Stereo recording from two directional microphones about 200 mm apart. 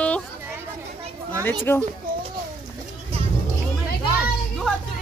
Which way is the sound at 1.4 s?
10° left (ahead or behind).